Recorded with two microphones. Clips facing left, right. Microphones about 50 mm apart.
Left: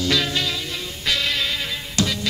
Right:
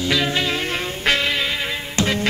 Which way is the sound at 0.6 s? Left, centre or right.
Right.